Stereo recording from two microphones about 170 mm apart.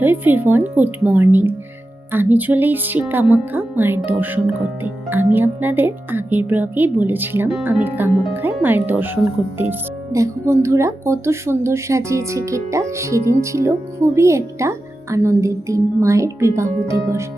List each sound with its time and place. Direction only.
0.0 s speech: 10° right (ahead or behind)